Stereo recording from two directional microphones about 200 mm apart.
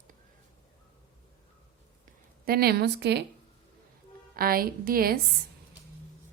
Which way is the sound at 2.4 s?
50° right (ahead or behind).